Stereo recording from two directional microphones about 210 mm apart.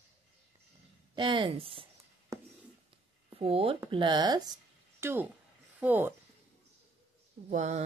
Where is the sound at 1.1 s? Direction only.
20° right (ahead or behind).